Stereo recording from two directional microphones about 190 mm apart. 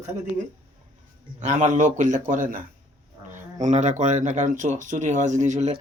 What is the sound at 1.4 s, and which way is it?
Speech, 40° right (ahead or behind).